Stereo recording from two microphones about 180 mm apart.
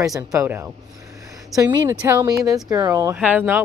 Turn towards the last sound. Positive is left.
turn(degrees=-10)  # may be behind; listen again after turning